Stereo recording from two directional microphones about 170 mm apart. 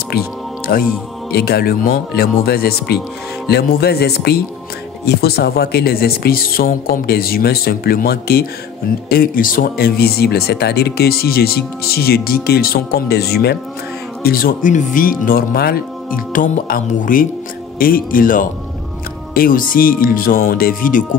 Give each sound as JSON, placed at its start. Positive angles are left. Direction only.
{"t": 0.1, "sound": "speech", "side_deg": 70}
{"t": 14.2, "sound": "speech", "side_deg": 60}